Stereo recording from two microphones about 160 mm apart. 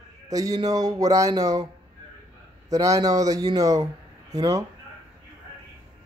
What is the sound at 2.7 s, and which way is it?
Speech, 20° right (ahead or behind).